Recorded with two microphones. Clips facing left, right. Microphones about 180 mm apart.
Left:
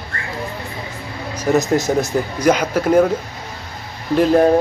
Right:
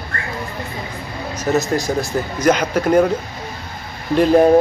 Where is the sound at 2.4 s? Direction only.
10° left (ahead or behind).